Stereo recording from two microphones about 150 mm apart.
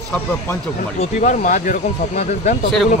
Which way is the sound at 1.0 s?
55° left (ahead or behind).